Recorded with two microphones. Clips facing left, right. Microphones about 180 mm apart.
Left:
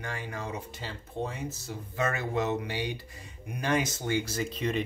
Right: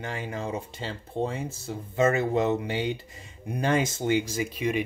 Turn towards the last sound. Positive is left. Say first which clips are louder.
# right 3 dB
turn(degrees=-10)  # may be behind; listen again after turning